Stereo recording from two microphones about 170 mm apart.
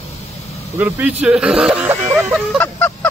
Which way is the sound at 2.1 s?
5° right (ahead or behind).